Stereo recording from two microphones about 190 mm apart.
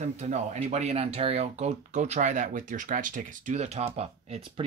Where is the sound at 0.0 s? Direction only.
40° right (ahead or behind).